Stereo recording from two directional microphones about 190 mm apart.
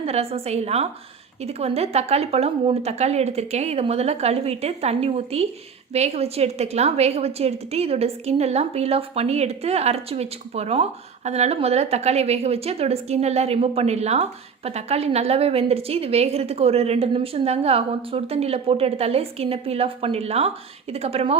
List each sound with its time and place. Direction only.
0.0 s a woman's voice: 30° right (ahead or behind)